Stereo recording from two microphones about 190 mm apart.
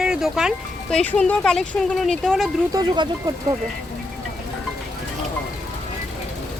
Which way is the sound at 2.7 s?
20° right (ahead or behind).